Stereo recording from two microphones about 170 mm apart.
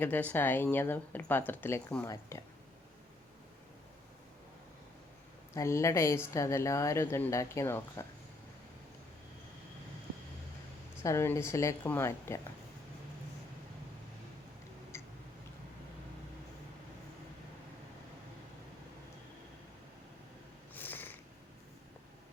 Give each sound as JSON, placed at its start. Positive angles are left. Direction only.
{"t": 0.0, "sound": "a woman's voice", "side_deg": 10}
{"t": 5.5, "sound": "a woman's voice", "side_deg": 15}
{"t": 11.0, "sound": "a woman's voice", "side_deg": 15}
{"t": 14.9, "sound": "tick", "side_deg": 15}
{"t": 20.7, "sound": "cat", "side_deg": 10}